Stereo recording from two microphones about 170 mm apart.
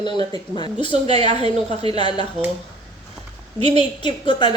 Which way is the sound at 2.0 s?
25° left (ahead or behind).